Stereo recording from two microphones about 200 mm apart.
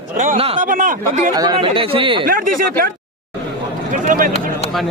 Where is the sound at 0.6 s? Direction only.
40° right (ahead or behind).